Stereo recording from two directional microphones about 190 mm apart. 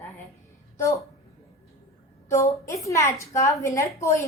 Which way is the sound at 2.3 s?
15° left (ahead or behind).